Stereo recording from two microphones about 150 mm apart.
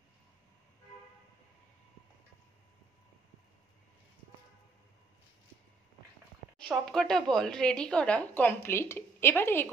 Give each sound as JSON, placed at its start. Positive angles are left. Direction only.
{"t": 6.7, "sound": "a woman's voice", "side_deg": 5}